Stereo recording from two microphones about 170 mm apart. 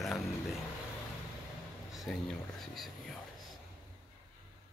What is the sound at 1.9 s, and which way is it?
Speech, centre (ahead or behind).